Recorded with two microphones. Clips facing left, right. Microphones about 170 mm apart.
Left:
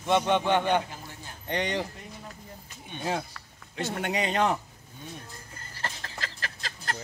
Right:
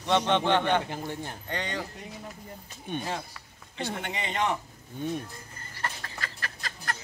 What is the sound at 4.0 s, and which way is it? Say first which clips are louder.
Speech: left 6 dB; 45° left (ahead or behind).